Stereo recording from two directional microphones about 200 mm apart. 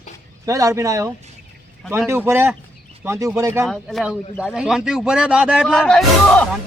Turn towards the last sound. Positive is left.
turn(degrees=5)  # may be behind; listen again after turning